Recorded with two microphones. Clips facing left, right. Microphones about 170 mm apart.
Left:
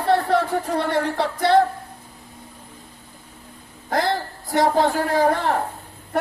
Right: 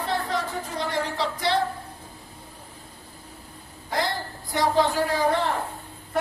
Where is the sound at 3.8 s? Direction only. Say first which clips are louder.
Left 5 dB; 55° left (ahead or behind).